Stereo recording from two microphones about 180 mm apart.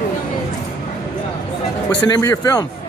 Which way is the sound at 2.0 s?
20° left (ahead or behind).